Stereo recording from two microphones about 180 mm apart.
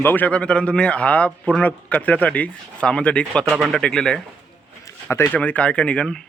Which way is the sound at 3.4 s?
5° right (ahead or behind).